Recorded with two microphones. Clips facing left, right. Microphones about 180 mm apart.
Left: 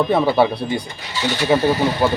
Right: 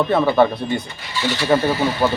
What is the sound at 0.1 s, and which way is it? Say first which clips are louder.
Speech: even; 10° left (ahead or behind).